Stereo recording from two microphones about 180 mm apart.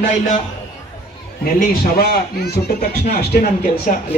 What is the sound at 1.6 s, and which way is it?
A man's voice, 55° left (ahead or behind).